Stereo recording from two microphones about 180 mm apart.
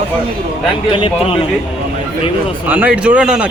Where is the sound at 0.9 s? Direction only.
30° left (ahead or behind).